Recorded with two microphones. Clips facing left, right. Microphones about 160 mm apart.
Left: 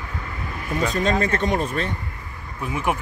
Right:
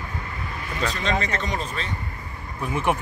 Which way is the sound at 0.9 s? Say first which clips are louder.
Left 5 dB; 50° left (ahead or behind).